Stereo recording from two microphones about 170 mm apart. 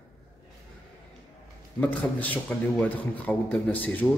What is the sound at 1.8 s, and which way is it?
A man's voice, 10° left (ahead or behind).